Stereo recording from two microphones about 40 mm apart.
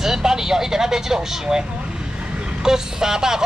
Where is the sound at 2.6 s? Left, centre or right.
Centre.